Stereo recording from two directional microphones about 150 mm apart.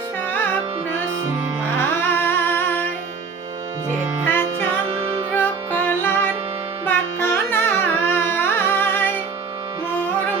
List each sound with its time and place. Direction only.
1.8 s humming: 15° left (ahead or behind)
4.3 s music: 15° left (ahead or behind)
4.9 s music: 40° right (ahead or behind)
5.3 s music: 15° left (ahead or behind)
6.8 s carnatic music: 15° left (ahead or behind)